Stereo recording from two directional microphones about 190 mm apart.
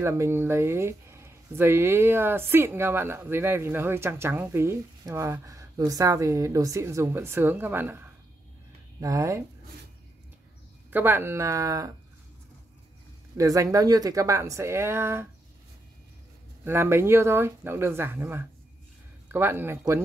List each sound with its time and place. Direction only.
0.0 s speech: 15° right (ahead or behind)
10.9 s speech: 10° right (ahead or behind)
13.4 s speech: 15° right (ahead or behind)
16.6 s speech: 10° right (ahead or behind)